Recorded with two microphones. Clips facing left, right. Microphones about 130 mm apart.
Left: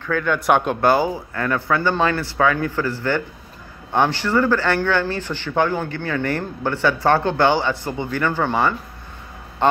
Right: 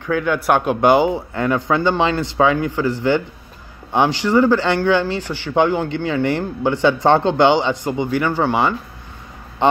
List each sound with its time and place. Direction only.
0.0 s speech: 10° right (ahead or behind)
0.7 s speech: 15° right (ahead or behind)